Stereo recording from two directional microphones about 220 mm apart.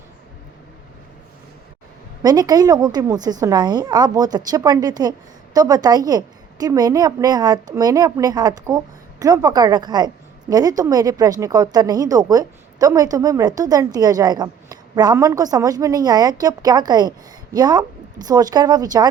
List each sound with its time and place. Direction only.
2.2 s speech: 15° right (ahead or behind)